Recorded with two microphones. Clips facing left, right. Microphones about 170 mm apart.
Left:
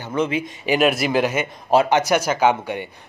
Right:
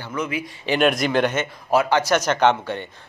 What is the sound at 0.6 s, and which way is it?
Speech, 5° left (ahead or behind).